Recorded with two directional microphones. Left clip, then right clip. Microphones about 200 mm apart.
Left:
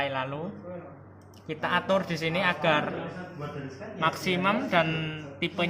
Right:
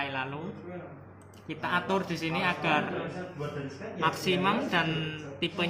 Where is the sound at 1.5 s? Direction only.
50° left (ahead or behind).